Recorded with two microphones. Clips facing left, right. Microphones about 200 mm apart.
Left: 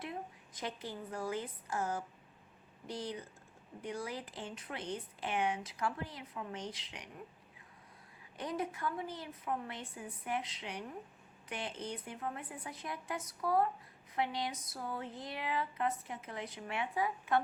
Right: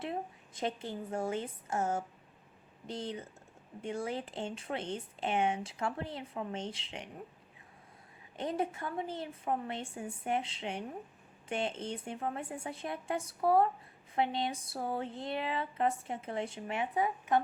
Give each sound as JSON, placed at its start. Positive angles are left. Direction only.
{"t": 0.0, "sound": "a woman's voice", "side_deg": -25}
{"t": 8.4, "sound": "a woman's voice", "side_deg": -25}